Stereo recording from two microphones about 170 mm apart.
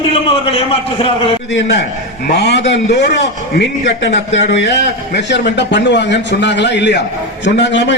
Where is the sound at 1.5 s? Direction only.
90° left.